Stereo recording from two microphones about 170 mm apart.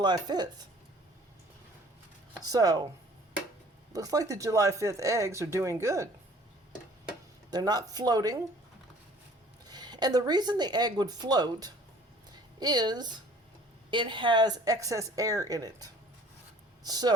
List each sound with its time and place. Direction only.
0.0 s a woman's voice: 25° right (ahead or behind)
2.4 s a woman's voice: 20° right (ahead or behind)
3.9 s speech: 20° right (ahead or behind)
7.5 s a woman's voice: 25° right (ahead or behind)
9.6 s a woman's voice: 25° right (ahead or behind)